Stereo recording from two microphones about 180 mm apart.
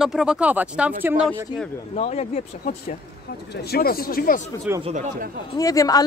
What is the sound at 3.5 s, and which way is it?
Speech, 60° left (ahead or behind).